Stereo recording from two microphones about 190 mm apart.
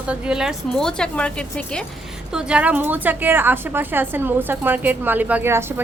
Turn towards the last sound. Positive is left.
turn(degrees=-15)  # may be behind; listen again after turning